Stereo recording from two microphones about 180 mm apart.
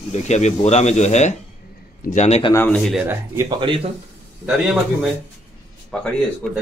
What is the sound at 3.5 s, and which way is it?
Speech, 30° right (ahead or behind).